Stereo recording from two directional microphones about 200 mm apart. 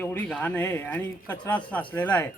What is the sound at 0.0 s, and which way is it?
Speech, 10° left (ahead or behind).